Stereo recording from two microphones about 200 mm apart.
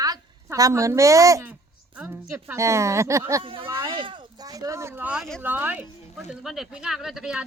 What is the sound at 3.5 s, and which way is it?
A woman's voice, 25° right (ahead or behind).